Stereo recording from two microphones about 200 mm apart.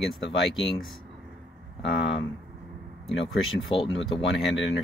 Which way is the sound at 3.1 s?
Centre (ahead or behind).